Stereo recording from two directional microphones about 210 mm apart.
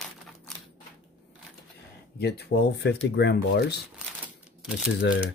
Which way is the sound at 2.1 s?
50° left (ahead or behind).